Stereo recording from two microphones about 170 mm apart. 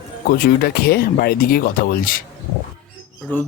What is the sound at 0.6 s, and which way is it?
Speech, 70° left (ahead or behind).